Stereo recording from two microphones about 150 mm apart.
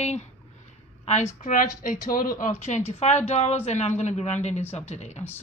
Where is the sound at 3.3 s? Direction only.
45° left (ahead or behind).